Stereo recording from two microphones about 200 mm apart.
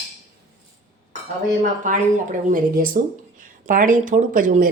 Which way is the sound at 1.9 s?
35° right (ahead or behind).